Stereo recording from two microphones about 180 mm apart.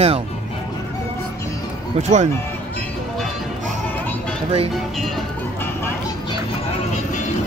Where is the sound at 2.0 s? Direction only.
40° right (ahead or behind).